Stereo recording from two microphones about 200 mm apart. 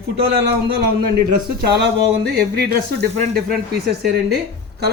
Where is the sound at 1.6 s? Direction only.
55° right (ahead or behind).